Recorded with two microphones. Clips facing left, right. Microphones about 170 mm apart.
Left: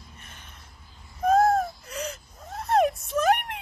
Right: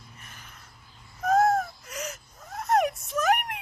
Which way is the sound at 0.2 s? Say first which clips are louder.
Even; 25° left (ahead or behind).